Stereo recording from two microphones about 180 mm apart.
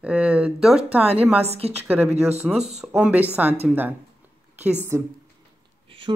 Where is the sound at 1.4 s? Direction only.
35° right (ahead or behind).